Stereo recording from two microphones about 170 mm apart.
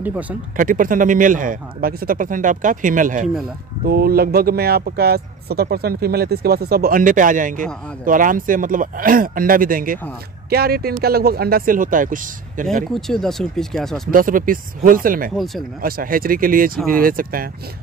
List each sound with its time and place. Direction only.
0.0 s speech: 10° right (ahead or behind)
0.6 s speech: 55° right (ahead or behind)
3.8 s speech: 60° right (ahead or behind)
10.5 s speech: 65° right (ahead or behind)
12.9 s speech: centre (ahead or behind)
14.1 s speech: 55° right (ahead or behind)
15.3 s speech: centre (ahead or behind)
15.8 s speech: 55° right (ahead or behind)